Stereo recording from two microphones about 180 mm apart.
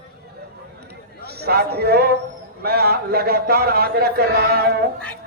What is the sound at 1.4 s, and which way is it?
A man's voice, 60° right (ahead or behind).